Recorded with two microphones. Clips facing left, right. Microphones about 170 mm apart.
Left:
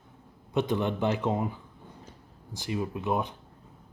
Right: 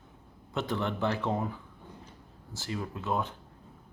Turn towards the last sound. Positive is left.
turn(degrees=15)  # may be behind; listen again after turning